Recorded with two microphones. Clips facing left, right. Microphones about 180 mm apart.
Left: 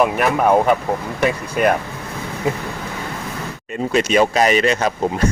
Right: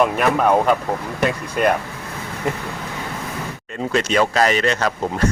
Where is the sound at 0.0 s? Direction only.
5° left (ahead or behind).